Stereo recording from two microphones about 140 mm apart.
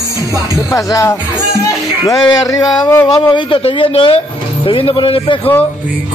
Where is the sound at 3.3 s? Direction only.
40° left (ahead or behind).